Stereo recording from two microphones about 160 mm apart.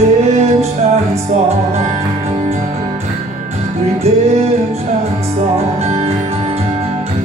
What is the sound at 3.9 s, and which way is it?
Music, 40° right (ahead or behind).